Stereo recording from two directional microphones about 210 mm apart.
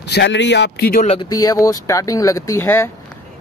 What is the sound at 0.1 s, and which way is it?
Speech, 55° left (ahead or behind).